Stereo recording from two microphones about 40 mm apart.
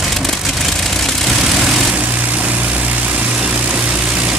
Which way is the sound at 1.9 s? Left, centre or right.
Right.